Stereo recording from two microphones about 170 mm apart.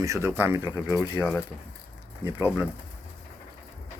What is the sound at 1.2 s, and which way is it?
Speech, 5° left (ahead or behind).